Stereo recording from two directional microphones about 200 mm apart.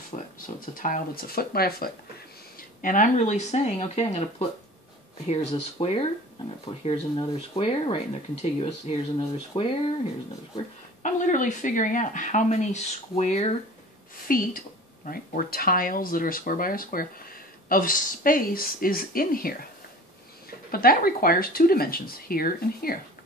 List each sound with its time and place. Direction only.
0.1 s speech: 35° left (ahead or behind)
11.0 s speech: 40° left (ahead or behind)
14.2 s speech: 45° left (ahead or behind)
20.7 s speech: 45° left (ahead or behind)